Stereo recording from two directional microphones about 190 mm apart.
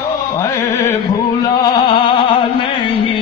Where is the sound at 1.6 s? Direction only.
25° left (ahead or behind).